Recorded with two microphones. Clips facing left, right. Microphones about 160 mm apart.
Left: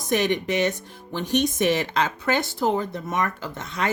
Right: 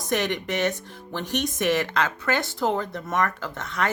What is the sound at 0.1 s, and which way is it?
Speech, 15° left (ahead or behind).